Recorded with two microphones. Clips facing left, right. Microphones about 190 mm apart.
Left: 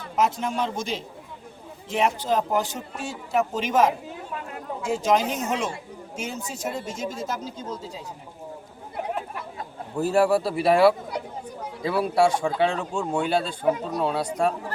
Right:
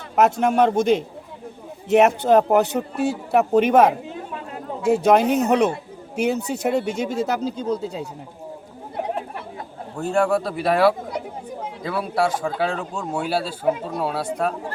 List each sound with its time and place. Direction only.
0.2 s speech: 65° right (ahead or behind)
10.0 s speech: 5° left (ahead or behind)